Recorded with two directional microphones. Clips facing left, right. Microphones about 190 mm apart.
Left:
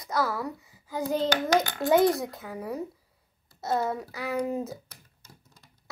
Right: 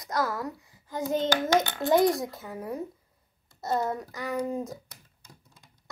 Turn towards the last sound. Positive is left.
turn(degrees=5)  # may be behind; listen again after turning